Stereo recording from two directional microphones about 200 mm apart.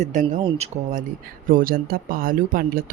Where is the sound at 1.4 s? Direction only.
45° right (ahead or behind).